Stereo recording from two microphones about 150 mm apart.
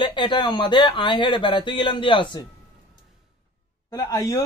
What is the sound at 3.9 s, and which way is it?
Speech, 25° left (ahead or behind).